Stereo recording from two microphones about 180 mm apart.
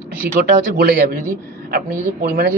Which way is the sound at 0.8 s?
60° right (ahead or behind).